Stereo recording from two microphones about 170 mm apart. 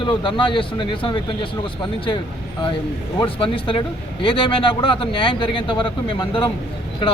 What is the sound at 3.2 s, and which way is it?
A man's voice, 30° left (ahead or behind).